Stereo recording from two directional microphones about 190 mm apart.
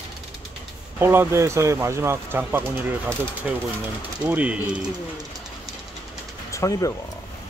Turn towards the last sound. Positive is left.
turn(degrees=15)  # may be behind; listen again after turning